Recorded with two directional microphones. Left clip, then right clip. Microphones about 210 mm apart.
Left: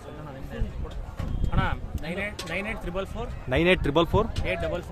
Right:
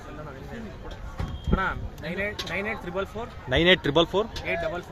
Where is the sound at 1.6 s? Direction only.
55° left (ahead or behind).